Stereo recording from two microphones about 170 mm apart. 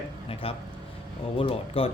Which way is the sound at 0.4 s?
35° left (ahead or behind).